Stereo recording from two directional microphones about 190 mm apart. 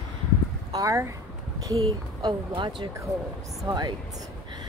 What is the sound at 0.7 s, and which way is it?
Speech, 15° right (ahead or behind).